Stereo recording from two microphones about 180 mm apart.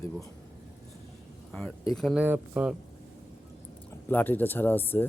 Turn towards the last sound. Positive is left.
turn(degrees=10)  # may be behind; listen again after turning